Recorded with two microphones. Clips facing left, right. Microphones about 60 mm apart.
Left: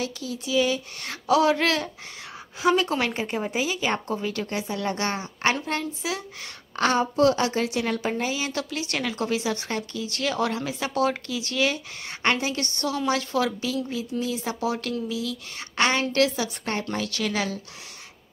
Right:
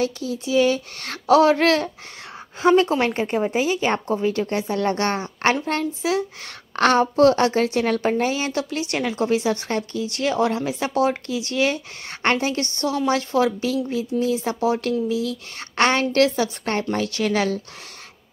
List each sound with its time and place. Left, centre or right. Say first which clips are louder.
0.0 s a woman's voice: right 6 dB; right
1.5 s a woman's voice: right 5 dB; right
6.8 s a woman's voice: right 5 dB; right
8.5 s a woman's voice: right 5 dB; right